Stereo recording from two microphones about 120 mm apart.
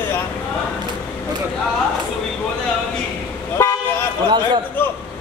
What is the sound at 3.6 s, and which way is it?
Toot, 20° left (ahead or behind).